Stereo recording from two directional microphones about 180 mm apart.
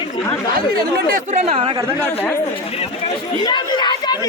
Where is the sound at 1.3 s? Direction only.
35° right (ahead or behind).